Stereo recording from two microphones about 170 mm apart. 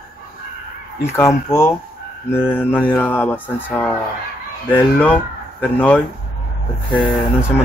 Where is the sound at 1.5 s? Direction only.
15° left (ahead or behind).